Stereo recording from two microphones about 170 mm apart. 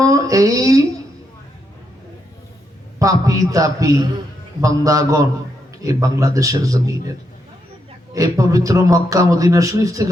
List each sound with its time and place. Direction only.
0.0 s a sound: 20° right (ahead or behind)
3.0 s speech: 20° right (ahead or behind)
8.1 s speech: 20° right (ahead or behind)